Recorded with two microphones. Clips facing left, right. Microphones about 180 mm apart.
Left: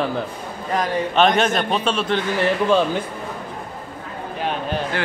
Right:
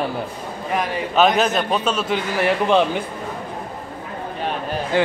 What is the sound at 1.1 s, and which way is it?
Speech, 5° right (ahead or behind).